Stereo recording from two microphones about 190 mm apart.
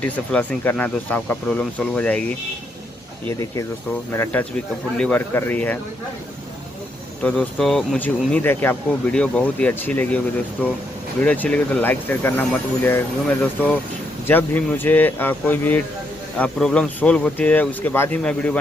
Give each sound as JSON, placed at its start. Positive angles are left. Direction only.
{"t": 0.0, "sound": "speech", "side_deg": 5}
{"t": 7.2, "sound": "speech", "side_deg": 5}